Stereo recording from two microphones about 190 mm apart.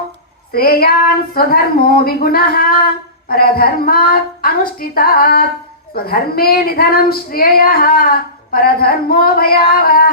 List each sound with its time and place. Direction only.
0.5 s speech: 55° left (ahead or behind)